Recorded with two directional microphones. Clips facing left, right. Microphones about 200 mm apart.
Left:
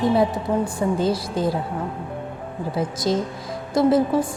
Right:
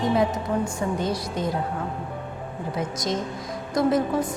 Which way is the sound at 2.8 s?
30° left (ahead or behind).